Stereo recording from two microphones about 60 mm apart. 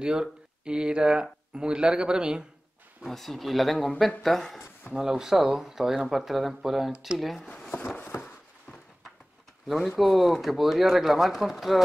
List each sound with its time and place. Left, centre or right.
0.0 s speech: centre
3.1 s speech: centre
8.1 s a sound: left
9.7 s speech: centre